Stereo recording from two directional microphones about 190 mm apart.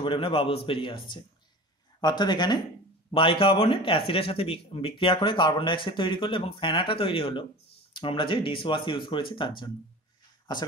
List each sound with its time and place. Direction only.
0.0 s speech: 30° left (ahead or behind)